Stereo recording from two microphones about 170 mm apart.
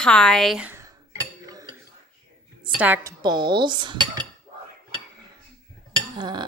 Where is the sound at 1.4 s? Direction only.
20° right (ahead or behind).